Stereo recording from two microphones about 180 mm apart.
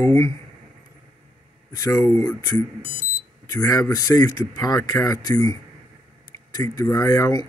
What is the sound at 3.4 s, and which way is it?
Speech, 20° left (ahead or behind).